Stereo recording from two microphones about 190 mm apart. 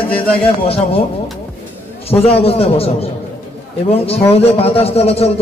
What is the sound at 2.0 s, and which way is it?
A man's voice, 30° left (ahead or behind).